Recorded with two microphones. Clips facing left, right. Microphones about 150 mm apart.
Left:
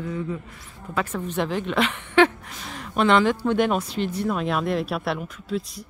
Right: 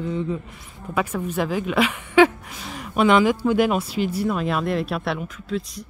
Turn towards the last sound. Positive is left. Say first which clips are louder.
# right 1 dB
turn(degrees=0)  # may be behind; listen again after turning